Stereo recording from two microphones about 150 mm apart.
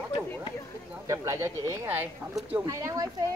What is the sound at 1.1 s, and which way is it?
Speech, 20° right (ahead or behind).